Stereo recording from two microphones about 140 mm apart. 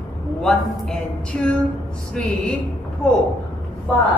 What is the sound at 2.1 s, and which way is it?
Speech, 5° left (ahead or behind).